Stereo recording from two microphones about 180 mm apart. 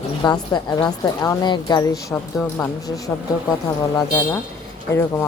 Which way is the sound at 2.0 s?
10° left (ahead or behind).